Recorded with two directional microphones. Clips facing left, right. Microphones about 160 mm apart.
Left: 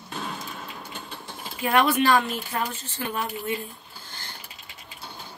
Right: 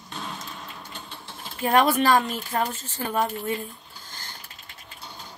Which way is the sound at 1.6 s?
40° right (ahead or behind).